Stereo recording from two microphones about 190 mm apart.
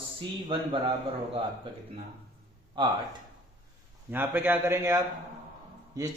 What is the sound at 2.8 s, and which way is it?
Speech, 25° right (ahead or behind).